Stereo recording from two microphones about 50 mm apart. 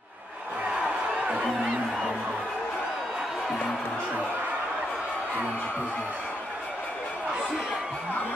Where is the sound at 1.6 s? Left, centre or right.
Centre.